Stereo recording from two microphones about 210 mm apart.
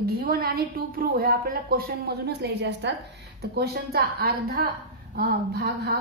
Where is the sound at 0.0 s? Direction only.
45° right (ahead or behind).